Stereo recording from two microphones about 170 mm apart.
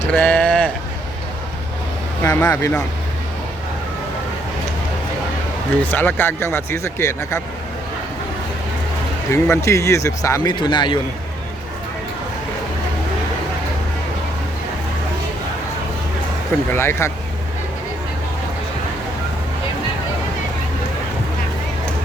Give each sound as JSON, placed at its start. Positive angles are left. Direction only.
{"t": 0.0, "sound": "a sound", "side_deg": 10}
{"t": 2.2, "sound": "speech", "side_deg": 15}
{"t": 5.8, "sound": "speech", "side_deg": 10}
{"t": 9.3, "sound": "speech", "side_deg": 15}
{"t": 16.7, "sound": "speech", "side_deg": 15}